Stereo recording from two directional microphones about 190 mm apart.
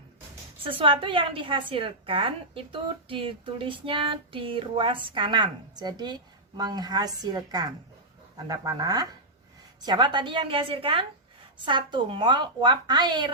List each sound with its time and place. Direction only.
0.7 s child singing: 25° right (ahead or behind)